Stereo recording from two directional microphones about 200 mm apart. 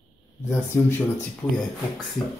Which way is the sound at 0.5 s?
15° left (ahead or behind).